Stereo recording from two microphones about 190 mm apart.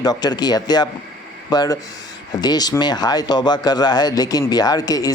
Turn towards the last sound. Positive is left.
turn(degrees=20)  # may be behind; listen again after turning